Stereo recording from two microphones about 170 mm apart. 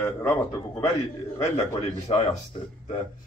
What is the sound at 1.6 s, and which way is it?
Speech, 35° left (ahead or behind).